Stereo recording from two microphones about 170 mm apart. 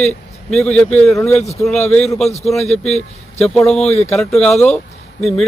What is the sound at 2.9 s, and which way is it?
Speech, 40° left (ahead or behind).